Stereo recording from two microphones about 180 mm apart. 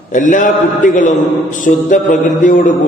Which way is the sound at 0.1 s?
45° left (ahead or behind).